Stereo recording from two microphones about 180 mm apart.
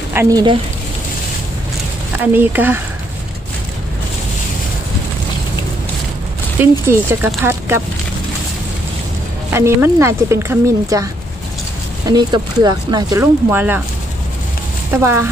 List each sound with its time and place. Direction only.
0.1 s speech: 15° right (ahead or behind)
2.3 s speech: 10° right (ahead or behind)
6.6 s speech: 15° right (ahead or behind)
9.5 s speech: 15° right (ahead or behind)
12.1 s speech: 20° right (ahead or behind)
14.9 s speech: 15° right (ahead or behind)